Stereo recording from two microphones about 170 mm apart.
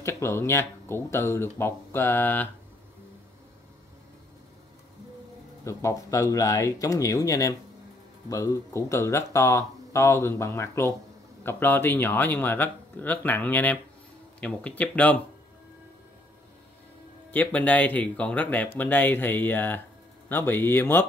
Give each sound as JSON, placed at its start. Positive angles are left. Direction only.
{"t": 0.0, "sound": "speech", "side_deg": 15}
{"t": 5.6, "sound": "speech", "side_deg": 15}
{"t": 17.3, "sound": "speech", "side_deg": 10}